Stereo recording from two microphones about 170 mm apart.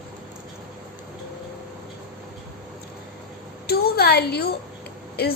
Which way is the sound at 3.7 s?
65° left (ahead or behind).